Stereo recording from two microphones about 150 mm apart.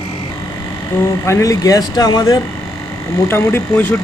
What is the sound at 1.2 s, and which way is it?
Speech, 20° left (ahead or behind).